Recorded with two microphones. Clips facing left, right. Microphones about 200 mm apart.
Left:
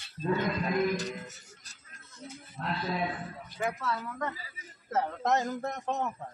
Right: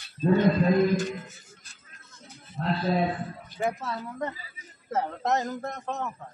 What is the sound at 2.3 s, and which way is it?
Speech, 35° right (ahead or behind).